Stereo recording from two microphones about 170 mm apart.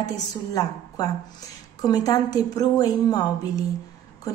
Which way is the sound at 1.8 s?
20° left (ahead or behind).